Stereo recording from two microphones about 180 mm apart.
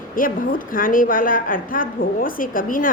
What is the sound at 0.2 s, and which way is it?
A woman's voice, 50° left (ahead or behind).